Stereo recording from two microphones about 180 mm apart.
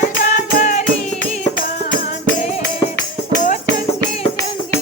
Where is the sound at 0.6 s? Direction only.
40° left (ahead or behind).